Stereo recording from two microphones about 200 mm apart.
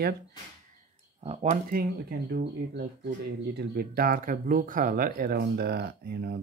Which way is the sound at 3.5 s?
50° right (ahead or behind).